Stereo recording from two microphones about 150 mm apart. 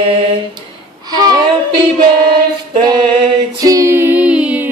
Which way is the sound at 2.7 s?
30° right (ahead or behind).